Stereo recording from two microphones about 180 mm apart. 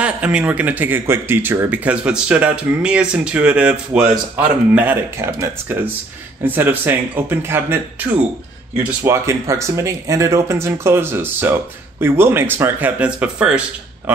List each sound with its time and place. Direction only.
0.0 s speech: 5° right (ahead or behind)